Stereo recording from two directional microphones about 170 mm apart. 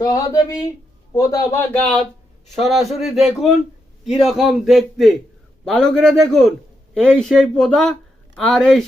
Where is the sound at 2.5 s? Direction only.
Centre (ahead or behind).